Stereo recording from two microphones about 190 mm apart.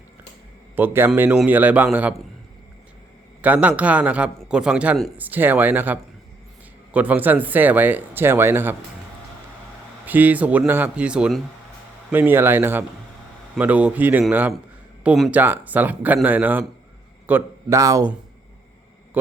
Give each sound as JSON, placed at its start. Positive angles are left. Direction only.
{"t": 0.8, "sound": "a man's voice", "side_deg": -10}
{"t": 3.4, "sound": "a man's voice", "side_deg": -10}
{"t": 10.1, "sound": "a man's voice", "side_deg": -10}
{"t": 19.2, "sound": "a sound", "side_deg": -10}